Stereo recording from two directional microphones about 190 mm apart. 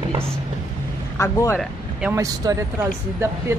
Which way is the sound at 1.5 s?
5° right (ahead or behind).